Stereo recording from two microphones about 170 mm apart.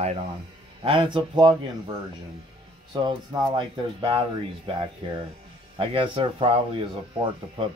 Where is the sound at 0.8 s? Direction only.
30° right (ahead or behind).